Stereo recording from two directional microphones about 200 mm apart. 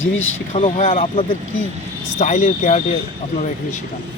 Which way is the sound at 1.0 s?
25° left (ahead or behind).